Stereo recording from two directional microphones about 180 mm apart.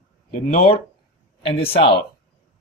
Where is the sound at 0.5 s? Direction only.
35° left (ahead or behind).